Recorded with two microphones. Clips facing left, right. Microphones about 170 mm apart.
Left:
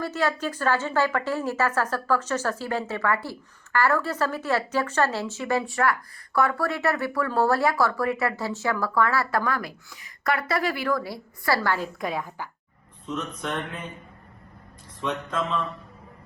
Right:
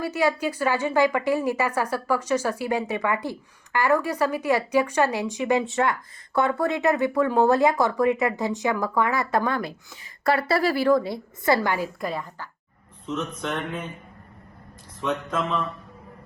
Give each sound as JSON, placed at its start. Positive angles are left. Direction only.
{"t": 0.0, "sound": "a woman's voice", "side_deg": -10}
{"t": 11.9, "sound": "speech", "side_deg": 0}
{"t": 15.0, "sound": "speech", "side_deg": 0}